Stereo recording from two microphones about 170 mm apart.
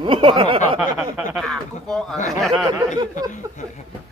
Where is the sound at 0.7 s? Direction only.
5° right (ahead or behind).